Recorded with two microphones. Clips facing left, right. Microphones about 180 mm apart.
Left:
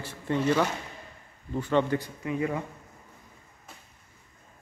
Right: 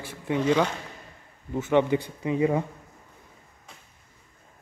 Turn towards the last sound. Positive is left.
turn(degrees=5)  # may be behind; listen again after turning